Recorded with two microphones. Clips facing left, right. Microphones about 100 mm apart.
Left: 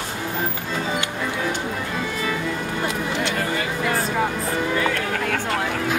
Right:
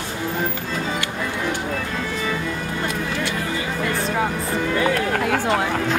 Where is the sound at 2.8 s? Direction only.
20° left (ahead or behind).